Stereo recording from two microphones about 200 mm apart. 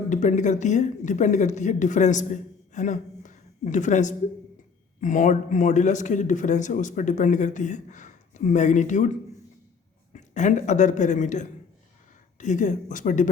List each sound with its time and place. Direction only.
0.1 s speech: 40° left (ahead or behind)